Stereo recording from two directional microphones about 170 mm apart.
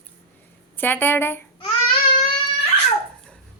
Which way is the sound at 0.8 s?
10° left (ahead or behind).